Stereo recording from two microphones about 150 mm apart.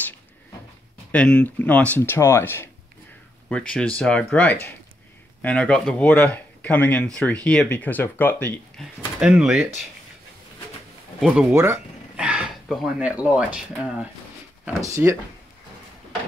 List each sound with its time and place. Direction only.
1.1 s speech: 5° left (ahead or behind)
9.2 s speech: 5° right (ahead or behind)
11.1 s speech: 5° right (ahead or behind)
11.5 s speech: 15° right (ahead or behind)
12.2 s speech: 5° right (ahead or behind)
14.6 s speech: 15° right (ahead or behind)